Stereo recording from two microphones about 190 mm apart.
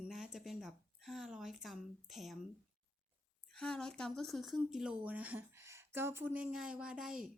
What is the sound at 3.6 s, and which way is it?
Speech, 5° left (ahead or behind).